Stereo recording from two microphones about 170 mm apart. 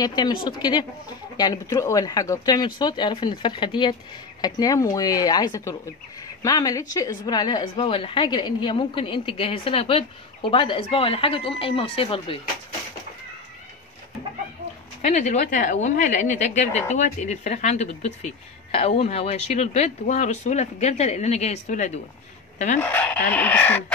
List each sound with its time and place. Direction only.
0.0 s a woman's voice: 25° left (ahead or behind)
15.0 s a woman's voice: 45° left (ahead or behind)
22.8 s chicken: 10° left (ahead or behind)